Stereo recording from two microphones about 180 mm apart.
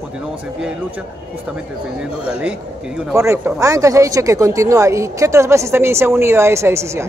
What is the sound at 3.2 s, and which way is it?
Speech, 15° right (ahead or behind).